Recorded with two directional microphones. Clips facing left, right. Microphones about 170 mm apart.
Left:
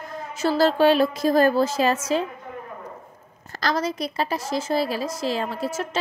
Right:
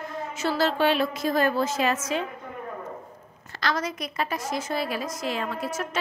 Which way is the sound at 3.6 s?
35° left (ahead or behind).